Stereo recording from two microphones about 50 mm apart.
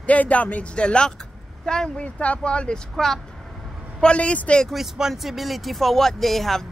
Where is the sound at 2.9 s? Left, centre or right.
Centre.